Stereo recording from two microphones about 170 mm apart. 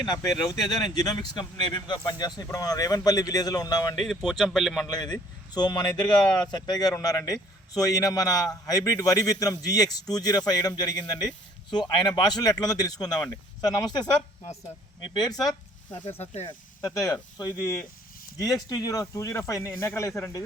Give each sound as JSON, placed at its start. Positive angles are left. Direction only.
{"t": 0.1, "sound": "speech", "side_deg": 25}
{"t": 3.9, "sound": "a man's voice", "side_deg": 0}
{"t": 4.9, "sound": "speech", "side_deg": 25}
{"t": 15.2, "sound": "speech", "side_deg": 25}
{"t": 16.0, "sound": "speech", "side_deg": 40}
{"t": 16.5, "sound": "speech", "side_deg": 20}